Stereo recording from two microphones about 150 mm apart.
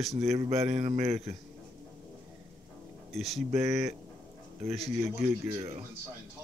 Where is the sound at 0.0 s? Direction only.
45° right (ahead or behind).